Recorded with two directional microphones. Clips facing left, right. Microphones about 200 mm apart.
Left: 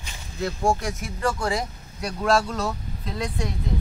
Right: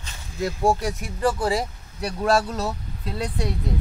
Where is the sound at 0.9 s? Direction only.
35° right (ahead or behind).